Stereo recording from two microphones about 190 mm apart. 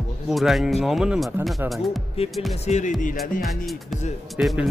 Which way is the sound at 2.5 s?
35° left (ahead or behind).